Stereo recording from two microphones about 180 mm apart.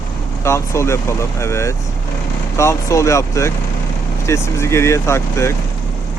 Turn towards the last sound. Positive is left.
turn(degrees=15)  # may be behind; listen again after turning